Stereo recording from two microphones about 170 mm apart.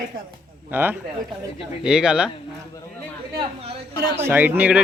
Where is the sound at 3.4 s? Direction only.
35° right (ahead or behind).